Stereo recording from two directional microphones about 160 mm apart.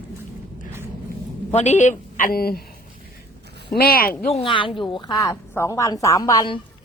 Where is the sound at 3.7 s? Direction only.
70° left (ahead or behind).